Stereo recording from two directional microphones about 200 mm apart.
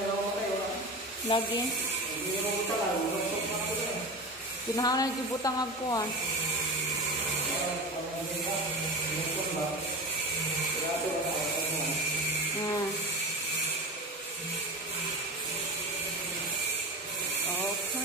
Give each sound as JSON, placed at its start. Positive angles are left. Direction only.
{"t": 1.3, "sound": "speech", "side_deg": 25}
{"t": 4.7, "sound": "speech", "side_deg": 20}